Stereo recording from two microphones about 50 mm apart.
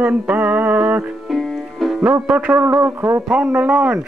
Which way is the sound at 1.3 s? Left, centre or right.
Centre.